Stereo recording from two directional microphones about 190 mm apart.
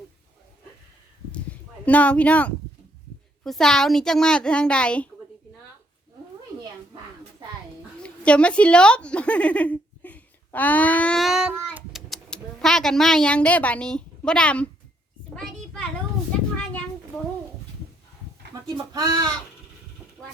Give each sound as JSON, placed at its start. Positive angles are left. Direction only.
{"t": 1.8, "sound": "a child's voice", "side_deg": 10}
{"t": 8.0, "sound": "a woman's voice", "side_deg": 5}
{"t": 15.4, "sound": "a sound", "side_deg": 5}
{"t": 18.9, "sound": "speech", "side_deg": -20}